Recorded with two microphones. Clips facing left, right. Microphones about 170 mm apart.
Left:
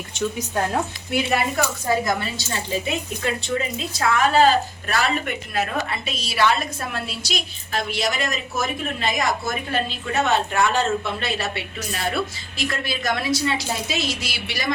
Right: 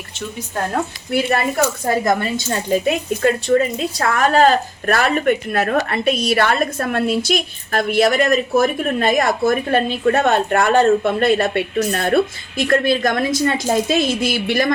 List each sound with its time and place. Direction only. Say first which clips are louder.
1.9 s a woman's voice: right 3 dB; 50° right (ahead or behind)